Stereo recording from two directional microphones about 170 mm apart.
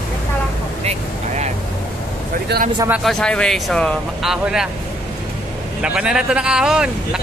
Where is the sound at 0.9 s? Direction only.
40° right (ahead or behind).